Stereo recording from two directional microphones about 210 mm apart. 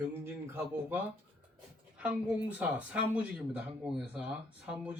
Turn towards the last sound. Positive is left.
turn(degrees=-5)  # may be behind; listen again after turning